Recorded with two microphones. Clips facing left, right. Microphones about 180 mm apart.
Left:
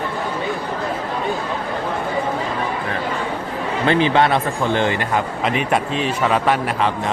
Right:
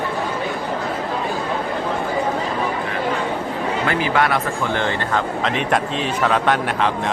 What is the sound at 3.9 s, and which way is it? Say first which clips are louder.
A man's voice: left 5 dB; 25° left (ahead or behind).